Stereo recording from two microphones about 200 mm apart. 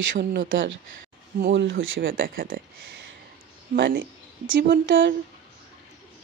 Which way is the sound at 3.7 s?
50° right (ahead or behind).